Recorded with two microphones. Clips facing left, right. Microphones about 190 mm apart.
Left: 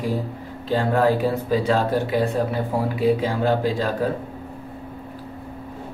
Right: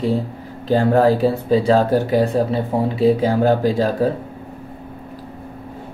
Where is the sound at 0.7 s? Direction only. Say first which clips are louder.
Right 5 dB; 40° right (ahead or behind).